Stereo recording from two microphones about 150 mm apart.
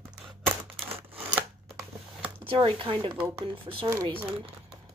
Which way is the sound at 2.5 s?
35° right (ahead or behind).